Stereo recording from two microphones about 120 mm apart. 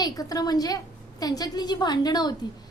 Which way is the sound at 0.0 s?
30° left (ahead or behind).